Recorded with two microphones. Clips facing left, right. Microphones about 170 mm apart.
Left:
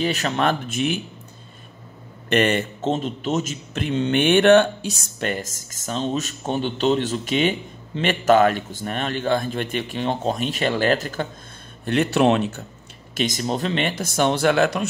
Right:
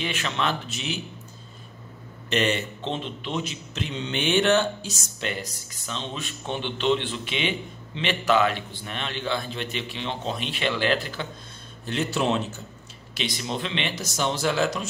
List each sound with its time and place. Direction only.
0.0 s speech: 40° left (ahead or behind)
2.2 s speech: 55° left (ahead or behind)
11.8 s a man's voice: 60° left (ahead or behind)
13.1 s speech: 45° left (ahead or behind); by 14.9 s 60° left (ahead or behind)